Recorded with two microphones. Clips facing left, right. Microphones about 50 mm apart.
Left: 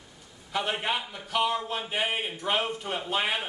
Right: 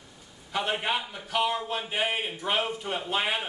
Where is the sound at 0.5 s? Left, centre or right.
Centre.